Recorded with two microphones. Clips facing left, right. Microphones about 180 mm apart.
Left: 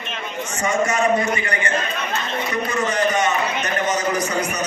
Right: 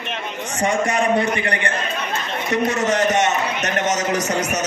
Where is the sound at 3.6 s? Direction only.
85° right.